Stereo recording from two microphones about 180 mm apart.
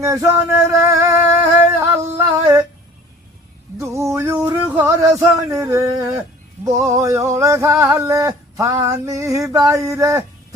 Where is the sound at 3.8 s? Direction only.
15° right (ahead or behind).